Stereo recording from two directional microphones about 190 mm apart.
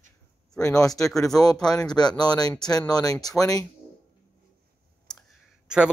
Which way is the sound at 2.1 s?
20° left (ahead or behind).